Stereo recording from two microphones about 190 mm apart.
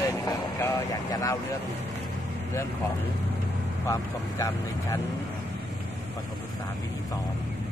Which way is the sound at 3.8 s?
15° left (ahead or behind).